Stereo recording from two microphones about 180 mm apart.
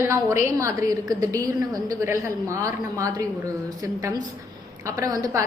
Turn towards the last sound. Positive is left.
turn(degrees=-20)  # may be behind; listen again after turning